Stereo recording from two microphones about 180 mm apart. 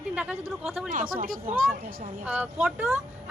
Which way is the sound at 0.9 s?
50° right (ahead or behind).